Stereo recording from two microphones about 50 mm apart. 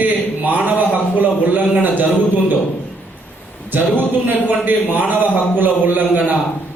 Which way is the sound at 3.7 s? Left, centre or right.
Right.